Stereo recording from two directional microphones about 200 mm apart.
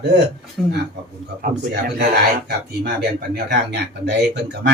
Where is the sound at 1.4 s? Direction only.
50° right (ahead or behind).